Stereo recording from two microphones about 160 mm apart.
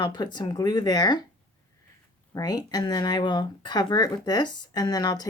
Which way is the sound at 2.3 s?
25° left (ahead or behind).